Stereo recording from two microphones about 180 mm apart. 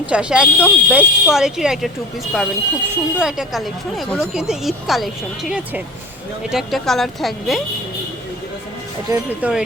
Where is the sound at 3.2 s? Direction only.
5° right (ahead or behind).